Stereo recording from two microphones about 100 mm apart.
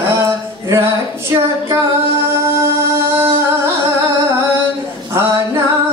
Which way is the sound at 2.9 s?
25° right (ahead or behind).